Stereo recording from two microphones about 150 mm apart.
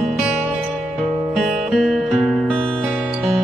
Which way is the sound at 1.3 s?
5° right (ahead or behind).